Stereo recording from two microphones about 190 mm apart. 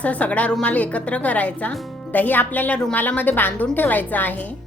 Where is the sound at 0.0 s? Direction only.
5° left (ahead or behind).